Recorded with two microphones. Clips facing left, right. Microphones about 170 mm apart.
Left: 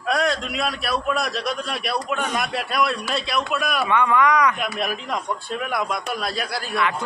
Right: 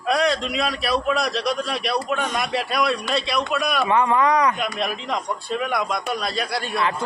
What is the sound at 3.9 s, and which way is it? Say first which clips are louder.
Speech: even; 30° right (ahead or behind).